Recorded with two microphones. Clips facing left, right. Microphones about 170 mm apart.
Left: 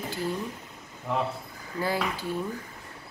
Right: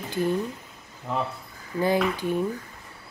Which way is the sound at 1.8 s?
20° right (ahead or behind).